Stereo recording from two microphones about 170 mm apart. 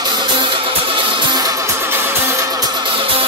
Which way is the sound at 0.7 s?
25° right (ahead or behind).